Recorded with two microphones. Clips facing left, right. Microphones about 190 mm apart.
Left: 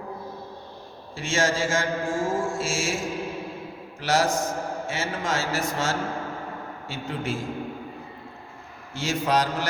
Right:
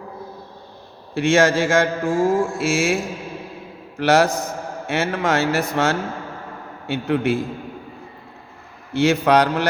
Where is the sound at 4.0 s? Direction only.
65° right (ahead or behind).